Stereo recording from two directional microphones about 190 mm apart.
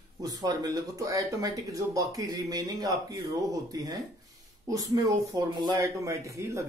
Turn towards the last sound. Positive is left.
turn(degrees=-15)  # may be behind; listen again after turning